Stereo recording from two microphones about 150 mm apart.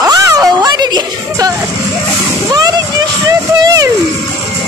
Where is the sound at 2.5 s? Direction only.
25° right (ahead or behind).